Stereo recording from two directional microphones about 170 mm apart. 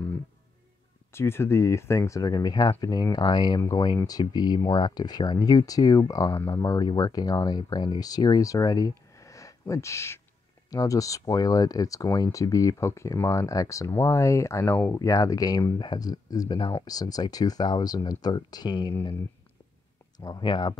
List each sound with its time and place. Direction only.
1.1 s speech: 15° left (ahead or behind)
20.2 s speech: 25° left (ahead or behind)